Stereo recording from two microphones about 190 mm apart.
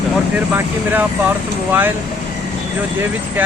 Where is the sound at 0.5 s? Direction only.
10° right (ahead or behind).